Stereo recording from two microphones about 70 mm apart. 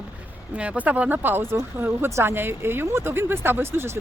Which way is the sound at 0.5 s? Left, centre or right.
Centre.